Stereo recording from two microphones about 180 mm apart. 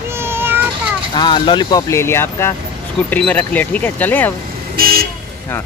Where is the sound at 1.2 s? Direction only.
25° left (ahead or behind).